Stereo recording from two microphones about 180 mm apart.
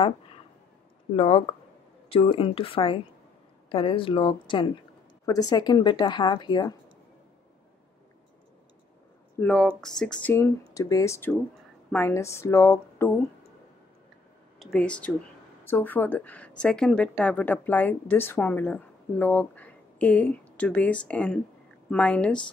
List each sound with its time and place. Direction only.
1.1 s a woman's voice: 35° left (ahead or behind)
9.4 s speech: 5° left (ahead or behind)
10.7 s a woman's voice: 20° left (ahead or behind)
14.6 s a woman's voice: 5° left (ahead or behind)